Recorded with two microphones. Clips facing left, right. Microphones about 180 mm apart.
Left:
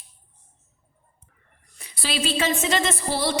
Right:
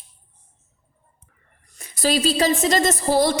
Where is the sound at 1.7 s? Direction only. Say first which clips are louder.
Right 8 dB; 45° right (ahead or behind).